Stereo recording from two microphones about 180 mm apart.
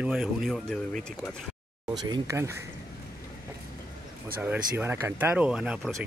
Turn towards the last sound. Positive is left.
turn(degrees=0)  # may be behind; listen again after turning